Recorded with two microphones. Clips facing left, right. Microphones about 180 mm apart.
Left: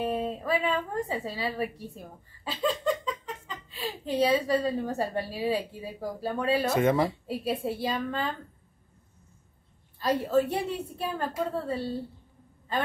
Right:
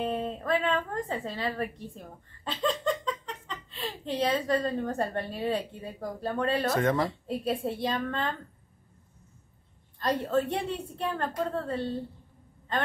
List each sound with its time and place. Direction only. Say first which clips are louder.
0.0 s a woman's voice: left 1 dB; 5° left (ahead or behind)
9.9 s a woman's voice: left 2 dB; 5° left (ahead or behind)